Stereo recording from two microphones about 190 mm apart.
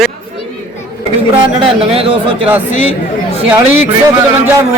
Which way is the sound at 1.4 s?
30° right (ahead or behind).